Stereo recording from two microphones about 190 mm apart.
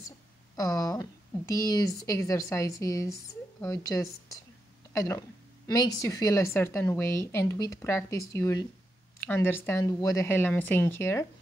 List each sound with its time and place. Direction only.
0.6 s a woman's voice: 15° left (ahead or behind)